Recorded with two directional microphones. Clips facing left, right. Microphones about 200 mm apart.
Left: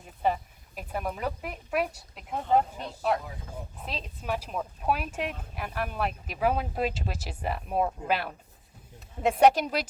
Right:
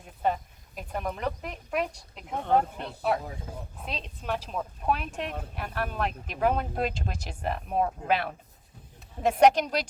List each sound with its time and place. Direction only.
0.8 s speech: 5° left (ahead or behind)
2.4 s speech: 60° right (ahead or behind)
3.8 s speech: centre (ahead or behind)